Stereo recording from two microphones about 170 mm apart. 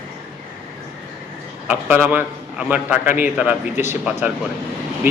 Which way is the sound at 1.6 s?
10° right (ahead or behind).